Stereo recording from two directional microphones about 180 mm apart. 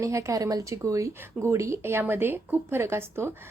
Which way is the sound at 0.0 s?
15° right (ahead or behind).